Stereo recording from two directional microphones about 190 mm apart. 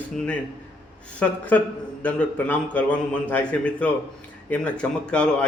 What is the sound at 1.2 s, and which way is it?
A man's voice, 5° left (ahead or behind).